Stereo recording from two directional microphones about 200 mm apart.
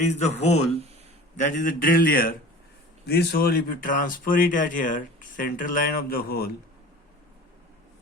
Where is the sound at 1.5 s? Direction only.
40° left (ahead or behind).